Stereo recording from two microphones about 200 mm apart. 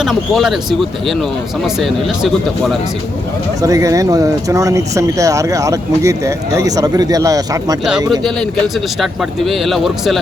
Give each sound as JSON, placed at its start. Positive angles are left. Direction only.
{"t": 0.0, "sound": "speech", "side_deg": 0}
{"t": 3.6, "sound": "speech", "side_deg": -15}
{"t": 8.2, "sound": "speech", "side_deg": 0}